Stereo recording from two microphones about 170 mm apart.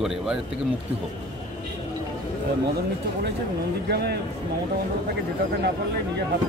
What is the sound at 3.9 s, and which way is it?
Speech, 70° right (ahead or behind).